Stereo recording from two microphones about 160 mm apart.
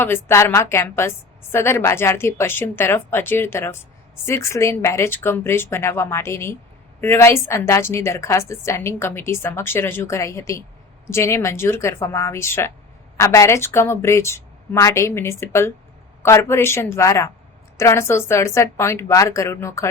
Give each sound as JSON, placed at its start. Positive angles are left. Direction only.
{"t": 0.0, "sound": "a woman's voice", "side_deg": 15}